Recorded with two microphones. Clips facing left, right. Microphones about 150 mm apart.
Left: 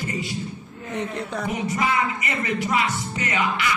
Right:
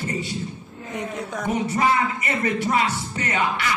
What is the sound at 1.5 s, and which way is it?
Music, 30° right (ahead or behind).